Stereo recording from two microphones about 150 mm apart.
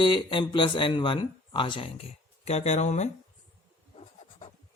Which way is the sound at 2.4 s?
45° left (ahead or behind).